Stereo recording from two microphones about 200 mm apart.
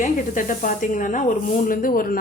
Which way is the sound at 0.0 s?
40° left (ahead or behind).